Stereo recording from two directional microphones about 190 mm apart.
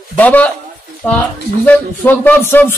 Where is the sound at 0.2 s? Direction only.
10° left (ahead or behind).